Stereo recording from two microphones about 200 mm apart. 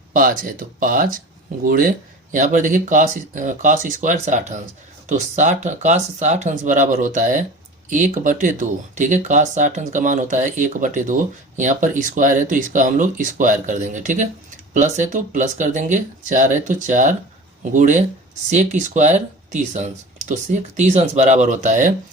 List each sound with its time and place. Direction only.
0.1 s speech: 45° right (ahead or behind)